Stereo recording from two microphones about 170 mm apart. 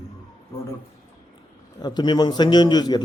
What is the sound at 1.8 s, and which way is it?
A man's voice, 25° left (ahead or behind).